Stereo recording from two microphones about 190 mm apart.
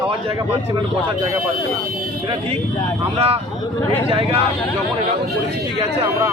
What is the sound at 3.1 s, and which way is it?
Speech, 30° right (ahead or behind).